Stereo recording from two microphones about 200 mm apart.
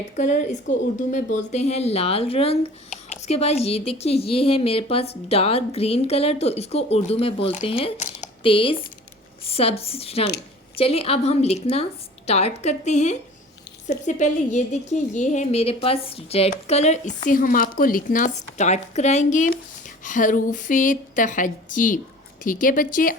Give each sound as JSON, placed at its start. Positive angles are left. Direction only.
{"t": 0.2, "sound": "a woman's voice", "side_deg": 40}